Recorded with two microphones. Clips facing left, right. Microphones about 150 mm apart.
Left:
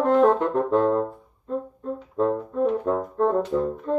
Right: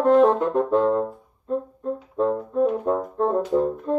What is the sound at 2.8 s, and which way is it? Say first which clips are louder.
Brass instrument: even; 20° right (ahead or behind).